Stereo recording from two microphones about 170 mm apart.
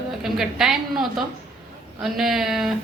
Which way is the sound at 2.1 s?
Centre (ahead or behind).